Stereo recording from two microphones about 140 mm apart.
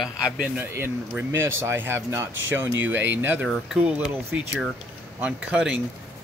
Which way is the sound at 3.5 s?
5° right (ahead or behind).